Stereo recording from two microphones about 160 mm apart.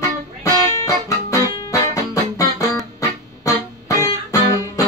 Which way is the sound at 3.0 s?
20° left (ahead or behind).